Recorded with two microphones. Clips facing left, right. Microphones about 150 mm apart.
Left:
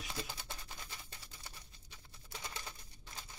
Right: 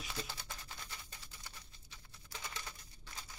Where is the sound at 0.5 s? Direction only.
20° left (ahead or behind).